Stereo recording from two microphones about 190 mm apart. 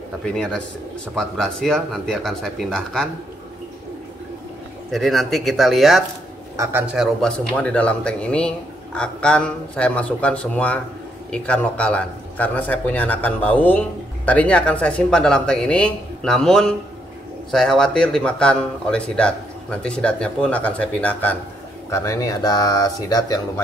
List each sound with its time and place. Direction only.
0.2 s speech: 5° left (ahead or behind)
4.9 s speech: centre (ahead or behind)
6.5 s a man's voice: 15° right (ahead or behind)
7.2 s a man's voice: 5° left (ahead or behind)